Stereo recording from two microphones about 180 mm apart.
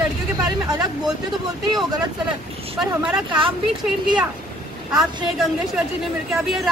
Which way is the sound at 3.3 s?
30° right (ahead or behind).